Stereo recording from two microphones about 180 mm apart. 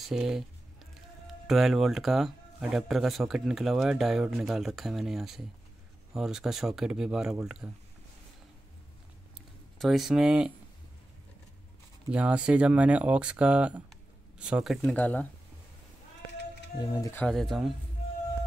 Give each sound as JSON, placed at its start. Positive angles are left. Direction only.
{"t": 0.0, "sound": "speech", "side_deg": -5}
{"t": 9.8, "sound": "speech", "side_deg": 0}
{"t": 12.1, "sound": "speech", "side_deg": -5}
{"t": 16.7, "sound": "speech", "side_deg": 20}
{"t": 17.2, "sound": "speech", "side_deg": 0}